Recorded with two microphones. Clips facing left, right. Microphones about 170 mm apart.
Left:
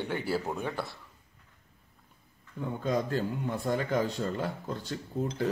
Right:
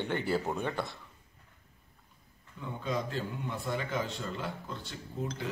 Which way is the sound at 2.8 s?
45° left (ahead or behind).